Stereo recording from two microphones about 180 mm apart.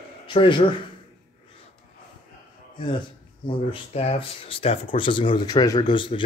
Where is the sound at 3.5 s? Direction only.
30° left (ahead or behind).